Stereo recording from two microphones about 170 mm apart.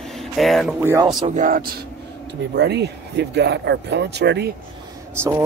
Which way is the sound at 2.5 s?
85° right.